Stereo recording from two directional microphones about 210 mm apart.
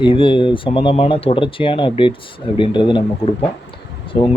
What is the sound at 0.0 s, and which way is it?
Speech, 25° left (ahead or behind).